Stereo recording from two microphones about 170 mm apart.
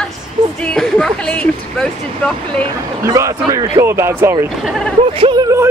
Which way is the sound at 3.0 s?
20° right (ahead or behind).